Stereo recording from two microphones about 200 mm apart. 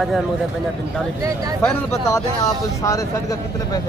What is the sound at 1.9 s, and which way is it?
Speech, 15° left (ahead or behind).